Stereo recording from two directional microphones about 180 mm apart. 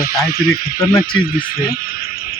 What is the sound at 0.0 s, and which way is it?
Speech, 55° left (ahead or behind).